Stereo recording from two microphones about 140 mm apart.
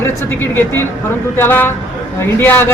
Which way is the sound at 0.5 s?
15° left (ahead or behind).